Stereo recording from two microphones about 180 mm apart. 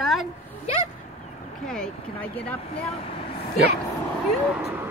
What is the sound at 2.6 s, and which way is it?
Speech, 35° left (ahead or behind).